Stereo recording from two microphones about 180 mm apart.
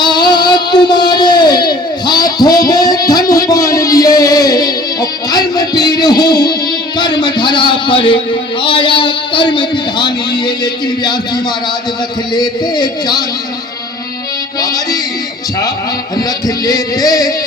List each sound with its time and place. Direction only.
0.0 s a sound: 25° left (ahead or behind)
7.0 s a man's voice: 25° left (ahead or behind)
12.3 s a man's voice: 25° left (ahead or behind)
14.6 s music: 20° left (ahead or behind)
16.6 s a man's voice: 20° left (ahead or behind)